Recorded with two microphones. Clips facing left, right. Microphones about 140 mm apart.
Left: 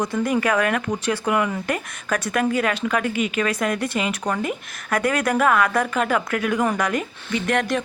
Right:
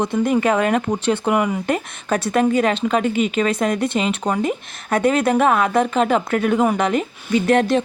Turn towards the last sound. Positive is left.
turn(degrees=-30)  # may be behind; listen again after turning